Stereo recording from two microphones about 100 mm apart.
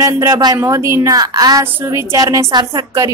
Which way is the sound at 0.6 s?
30° right (ahead or behind).